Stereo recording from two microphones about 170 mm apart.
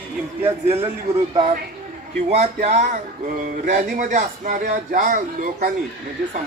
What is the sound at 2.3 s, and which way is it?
Speech, 40° right (ahead or behind).